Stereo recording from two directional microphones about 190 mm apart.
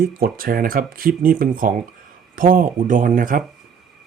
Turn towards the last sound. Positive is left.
turn(degrees=-45)  # may be behind; listen again after turning